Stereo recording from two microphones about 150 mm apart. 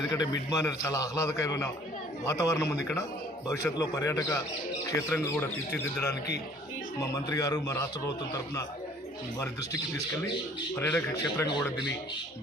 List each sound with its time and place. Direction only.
0.1 s a man's voice: 25° left (ahead or behind)
10.8 s a man's voice: 15° left (ahead or behind)